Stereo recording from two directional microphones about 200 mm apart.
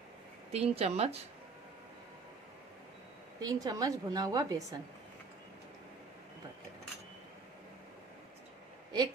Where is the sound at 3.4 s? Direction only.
20° right (ahead or behind).